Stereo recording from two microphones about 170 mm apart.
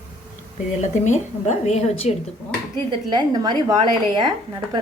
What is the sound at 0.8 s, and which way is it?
A woman's voice, 45° left (ahead or behind).